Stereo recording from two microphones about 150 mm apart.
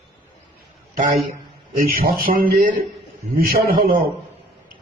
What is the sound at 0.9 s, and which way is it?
A man's voice, 60° right (ahead or behind).